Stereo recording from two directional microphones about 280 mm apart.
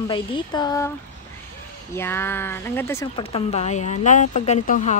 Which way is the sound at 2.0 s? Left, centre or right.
Centre.